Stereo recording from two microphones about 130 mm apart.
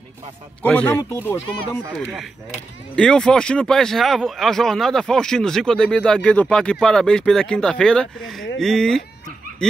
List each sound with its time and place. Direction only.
0.6 s speech: 10° left (ahead or behind)
3.0 s speech: 5° left (ahead or behind)